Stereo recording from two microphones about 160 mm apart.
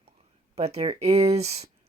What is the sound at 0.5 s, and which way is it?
Speech, 40° right (ahead or behind).